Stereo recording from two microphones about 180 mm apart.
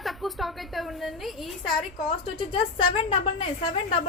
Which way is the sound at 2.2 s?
30° left (ahead or behind).